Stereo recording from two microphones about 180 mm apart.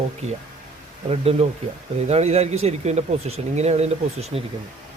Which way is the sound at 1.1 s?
35° right (ahead or behind).